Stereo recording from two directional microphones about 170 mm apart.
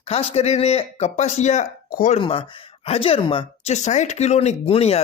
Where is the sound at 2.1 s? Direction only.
30° left (ahead or behind).